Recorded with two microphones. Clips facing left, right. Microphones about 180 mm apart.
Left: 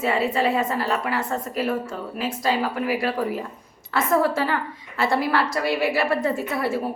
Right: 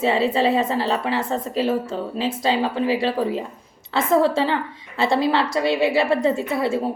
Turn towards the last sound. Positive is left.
turn(degrees=-25)  # may be behind; listen again after turning